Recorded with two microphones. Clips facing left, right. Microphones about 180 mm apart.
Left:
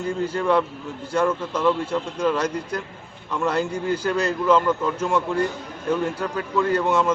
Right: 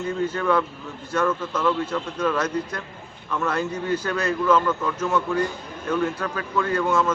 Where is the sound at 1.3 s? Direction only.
10° left (ahead or behind).